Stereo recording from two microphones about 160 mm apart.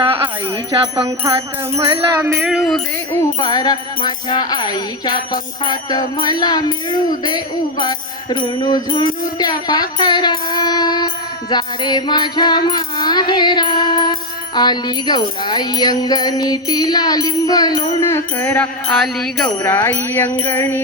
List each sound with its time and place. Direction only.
0.0 s music: 35° right (ahead or behind)
2.3 s music: 5° right (ahead or behind)
3.4 s music: 25° left (ahead or behind)
18.9 s music: centre (ahead or behind)
19.6 s music: 15° left (ahead or behind)